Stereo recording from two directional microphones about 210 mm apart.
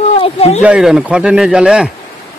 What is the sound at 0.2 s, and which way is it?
Speech, 30° left (ahead or behind).